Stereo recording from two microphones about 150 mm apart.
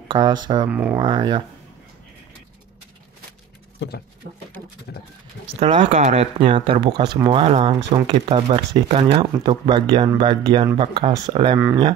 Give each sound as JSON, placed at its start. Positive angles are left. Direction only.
{"t": 0.1, "sound": "speech", "side_deg": -30}
{"t": 0.7, "sound": "speech", "side_deg": -10}
{"t": 0.9, "sound": "speech", "side_deg": -30}
{"t": 5.5, "sound": "speech", "side_deg": -40}
{"t": 7.2, "sound": "speech", "side_deg": -40}
{"t": 9.4, "sound": "speech", "side_deg": -35}